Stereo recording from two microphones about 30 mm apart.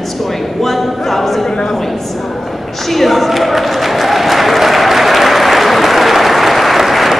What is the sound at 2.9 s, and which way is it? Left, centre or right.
Applause, centre.